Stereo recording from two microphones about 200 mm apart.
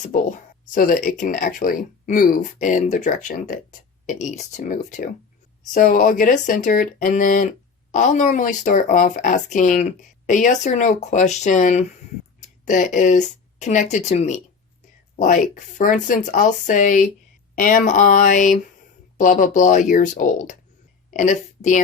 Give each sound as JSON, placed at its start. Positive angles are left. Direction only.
{"t": 0.0, "sound": "speech", "side_deg": 40}